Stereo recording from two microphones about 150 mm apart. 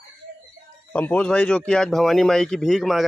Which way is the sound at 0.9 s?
10° left (ahead or behind).